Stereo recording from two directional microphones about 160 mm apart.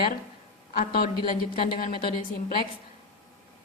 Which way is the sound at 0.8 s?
65° left (ahead or behind).